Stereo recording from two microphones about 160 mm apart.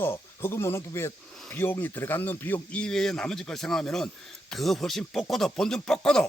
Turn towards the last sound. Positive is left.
turn(degrees=5)  # may be behind; listen again after turning